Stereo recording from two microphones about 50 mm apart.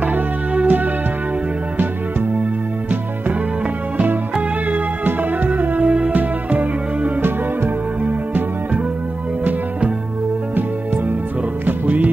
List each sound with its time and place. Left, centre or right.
0.0 s music: right
4.6 s music: right
7.2 s music: right
9.4 s music: right
11.6 s music: right